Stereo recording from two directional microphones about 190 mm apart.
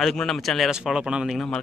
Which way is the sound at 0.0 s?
Centre (ahead or behind).